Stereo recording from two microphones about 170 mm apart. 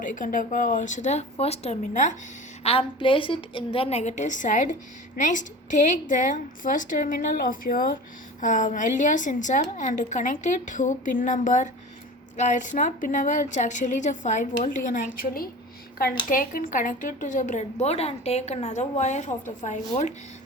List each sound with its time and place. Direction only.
0.1 s a woman's voice: 50° left (ahead or behind)
2.6 s a woman's voice: 30° left (ahead or behind)